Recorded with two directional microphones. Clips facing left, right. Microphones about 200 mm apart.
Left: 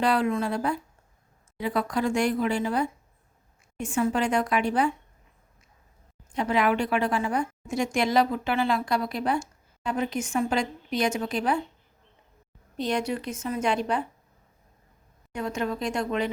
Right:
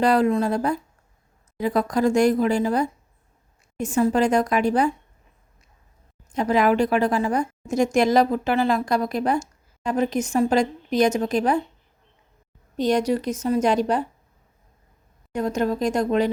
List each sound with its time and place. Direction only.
0.0 s a woman's voice: 40° right (ahead or behind)
6.3 s a woman's voice: 40° right (ahead or behind)
12.7 s a woman's voice: 40° right (ahead or behind)
15.3 s a woman's voice: 40° right (ahead or behind)